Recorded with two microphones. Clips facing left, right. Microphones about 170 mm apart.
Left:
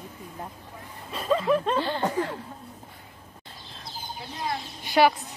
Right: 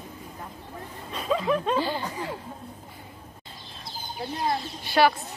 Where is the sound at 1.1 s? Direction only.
Centre (ahead or behind).